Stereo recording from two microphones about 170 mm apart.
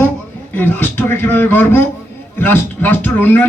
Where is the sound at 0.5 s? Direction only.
10° left (ahead or behind).